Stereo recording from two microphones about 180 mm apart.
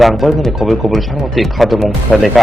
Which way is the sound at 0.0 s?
Centre (ahead or behind).